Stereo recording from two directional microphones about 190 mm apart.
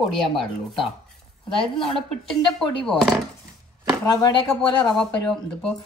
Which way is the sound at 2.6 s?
Centre (ahead or behind).